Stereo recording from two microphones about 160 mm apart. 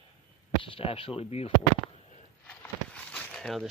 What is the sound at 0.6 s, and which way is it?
Speech, 35° left (ahead or behind).